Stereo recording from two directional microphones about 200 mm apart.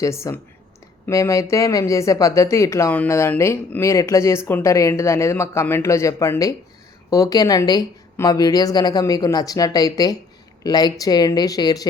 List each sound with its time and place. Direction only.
0.0 s speech: 15° left (ahead or behind)